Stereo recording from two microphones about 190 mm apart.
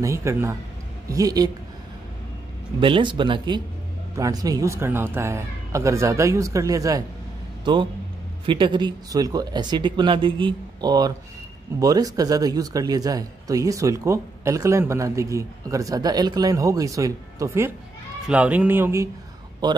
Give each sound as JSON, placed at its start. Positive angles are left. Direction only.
{"t": 0.0, "sound": "speech", "side_deg": -15}
{"t": 2.8, "sound": "speech", "side_deg": -25}